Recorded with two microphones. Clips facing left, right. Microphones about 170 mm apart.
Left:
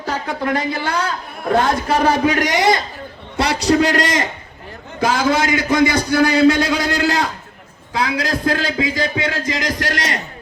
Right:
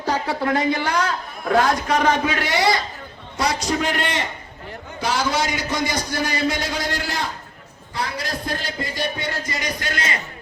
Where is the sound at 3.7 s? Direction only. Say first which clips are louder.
Left 7 dB; 85° left.